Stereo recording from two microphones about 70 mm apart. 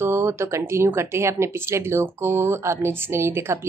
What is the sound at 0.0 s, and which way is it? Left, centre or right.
Speech, right.